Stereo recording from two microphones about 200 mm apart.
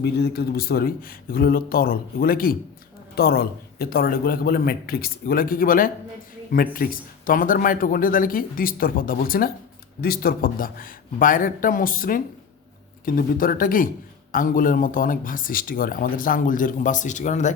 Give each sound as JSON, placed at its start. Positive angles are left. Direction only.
{"t": 0.0, "sound": "speech", "side_deg": 55}